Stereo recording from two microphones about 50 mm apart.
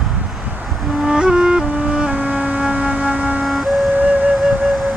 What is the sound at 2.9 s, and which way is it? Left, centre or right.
Siren, right.